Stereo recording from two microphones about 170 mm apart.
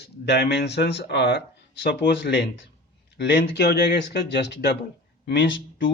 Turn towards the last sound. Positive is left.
turn(degrees=90)